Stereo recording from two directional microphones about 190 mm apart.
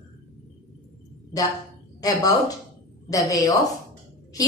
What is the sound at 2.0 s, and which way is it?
A woman's voice, 20° left (ahead or behind).